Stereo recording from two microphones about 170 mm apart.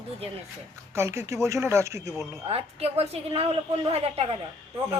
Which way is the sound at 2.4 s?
35° right (ahead or behind).